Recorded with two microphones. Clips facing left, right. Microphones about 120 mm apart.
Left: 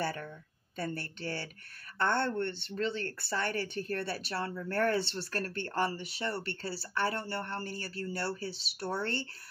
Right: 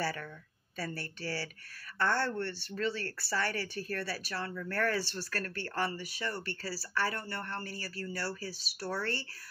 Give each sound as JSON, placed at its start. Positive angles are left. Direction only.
{"t": 0.0, "sound": "speech", "side_deg": 20}